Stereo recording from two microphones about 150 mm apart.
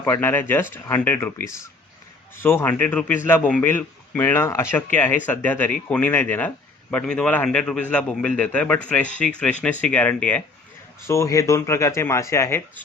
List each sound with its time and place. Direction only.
0.0 s a man's voice: 15° left (ahead or behind)